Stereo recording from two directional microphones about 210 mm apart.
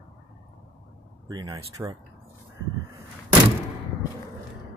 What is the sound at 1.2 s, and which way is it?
Speech, 15° right (ahead or behind).